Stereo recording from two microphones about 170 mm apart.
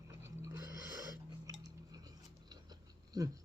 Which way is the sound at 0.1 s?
15° right (ahead or behind).